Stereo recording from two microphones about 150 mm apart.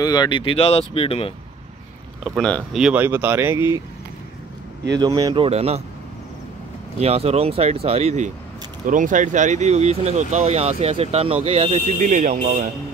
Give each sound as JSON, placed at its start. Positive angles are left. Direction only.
{"t": 0.0, "sound": "speech", "side_deg": 25}
{"t": 2.2, "sound": "speech", "side_deg": 0}
{"t": 2.8, "sound": "speech", "side_deg": -10}
{"t": 4.9, "sound": "speech", "side_deg": -25}
{"t": 5.5, "sound": "speech", "side_deg": -45}
{"t": 7.0, "sound": "speech", "side_deg": -45}
{"t": 8.8, "sound": "speech", "side_deg": -60}